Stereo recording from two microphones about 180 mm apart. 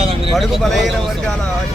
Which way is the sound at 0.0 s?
30° right (ahead or behind).